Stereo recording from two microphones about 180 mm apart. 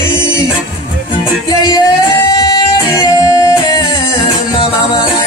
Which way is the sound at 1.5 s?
20° left (ahead or behind).